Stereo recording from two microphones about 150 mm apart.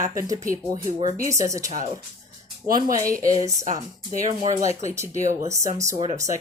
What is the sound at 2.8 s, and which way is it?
Speech, 70° right (ahead or behind).